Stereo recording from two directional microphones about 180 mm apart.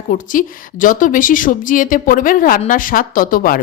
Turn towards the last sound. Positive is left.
turn(degrees=50)  # may be behind; listen again after turning